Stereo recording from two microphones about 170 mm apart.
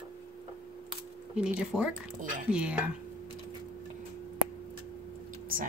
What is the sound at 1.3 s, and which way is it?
Speech, 5° right (ahead or behind).